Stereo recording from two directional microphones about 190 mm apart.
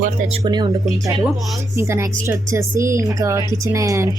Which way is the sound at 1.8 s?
15° right (ahead or behind).